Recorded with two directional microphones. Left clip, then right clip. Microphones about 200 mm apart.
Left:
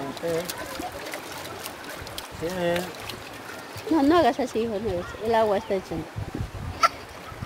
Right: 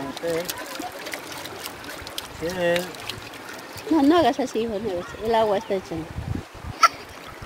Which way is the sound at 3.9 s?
15° right (ahead or behind).